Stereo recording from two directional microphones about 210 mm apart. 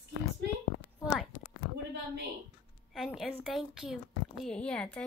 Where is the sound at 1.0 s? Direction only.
5° right (ahead or behind).